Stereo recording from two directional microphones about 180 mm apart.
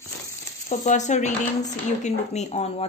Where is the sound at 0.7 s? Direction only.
40° left (ahead or behind).